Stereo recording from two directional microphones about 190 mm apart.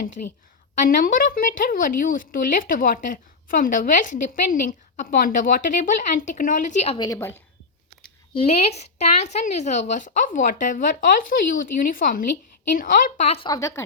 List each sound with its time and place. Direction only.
0.2 s speech: 40° left (ahead or behind)
7.0 s a woman's voice: 15° left (ahead or behind)
8.3 s speech: 30° left (ahead or behind)
13.5 s a woman's voice: 15° left (ahead or behind)